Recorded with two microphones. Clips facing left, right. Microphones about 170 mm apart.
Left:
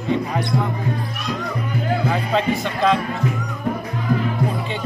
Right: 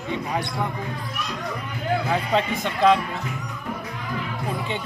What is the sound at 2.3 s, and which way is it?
Speech, 15° right (ahead or behind).